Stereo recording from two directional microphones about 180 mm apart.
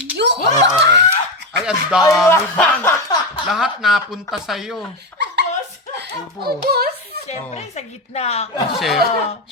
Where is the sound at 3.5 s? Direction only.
Centre (ahead or behind).